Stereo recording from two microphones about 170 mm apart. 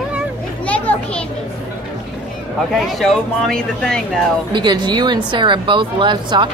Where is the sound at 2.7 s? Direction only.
Centre (ahead or behind).